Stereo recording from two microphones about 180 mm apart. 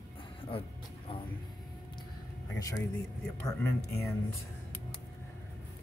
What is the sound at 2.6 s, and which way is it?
Speech, 20° left (ahead or behind).